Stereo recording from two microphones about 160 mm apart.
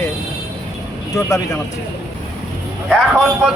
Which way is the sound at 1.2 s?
20° left (ahead or behind).